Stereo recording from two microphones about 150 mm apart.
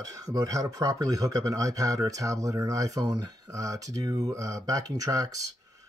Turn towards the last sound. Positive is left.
turn(degrees=-20)  # may be behind; listen again after turning